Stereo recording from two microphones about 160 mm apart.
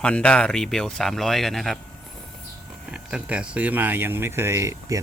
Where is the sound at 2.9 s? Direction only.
5° right (ahead or behind).